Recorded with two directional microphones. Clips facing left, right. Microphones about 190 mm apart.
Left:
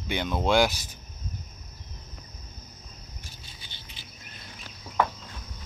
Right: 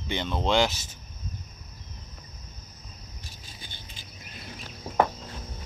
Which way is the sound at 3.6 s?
50° right (ahead or behind).